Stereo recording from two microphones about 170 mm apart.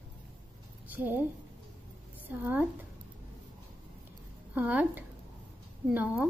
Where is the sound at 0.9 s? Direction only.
10° right (ahead or behind).